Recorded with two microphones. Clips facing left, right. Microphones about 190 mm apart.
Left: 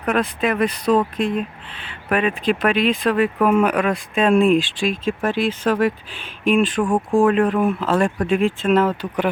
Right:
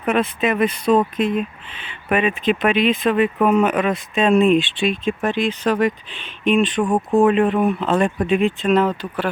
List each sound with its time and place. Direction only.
0.0 s speech: 5° right (ahead or behind)
0.9 s speech: 25° right (ahead or behind)
2.0 s speech: 5° right (ahead or behind)
6.8 s speech: 20° right (ahead or behind)
7.3 s speech: 5° right (ahead or behind); by 9.3 s 15° left (ahead or behind)